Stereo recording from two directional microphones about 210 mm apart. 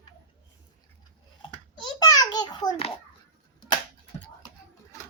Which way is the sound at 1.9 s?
20° left (ahead or behind).